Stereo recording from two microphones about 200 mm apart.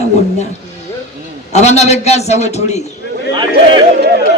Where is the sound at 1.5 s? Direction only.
35° left (ahead or behind).